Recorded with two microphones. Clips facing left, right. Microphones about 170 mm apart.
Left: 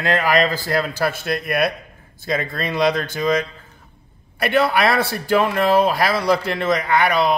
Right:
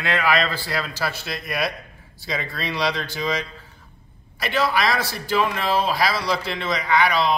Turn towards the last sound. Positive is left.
turn(degrees=50)  # may be behind; listen again after turning